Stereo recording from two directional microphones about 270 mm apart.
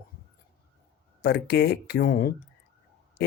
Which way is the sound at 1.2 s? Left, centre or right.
Left.